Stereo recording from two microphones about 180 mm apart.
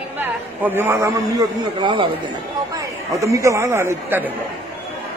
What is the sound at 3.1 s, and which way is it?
A man's voice, 15° right (ahead or behind).